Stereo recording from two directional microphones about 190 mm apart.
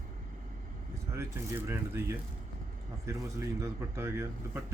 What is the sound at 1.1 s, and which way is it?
A man's voice, 15° right (ahead or behind).